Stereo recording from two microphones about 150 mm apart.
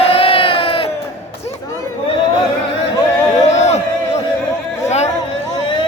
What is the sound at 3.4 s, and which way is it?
Crowd, 45° left (ahead or behind).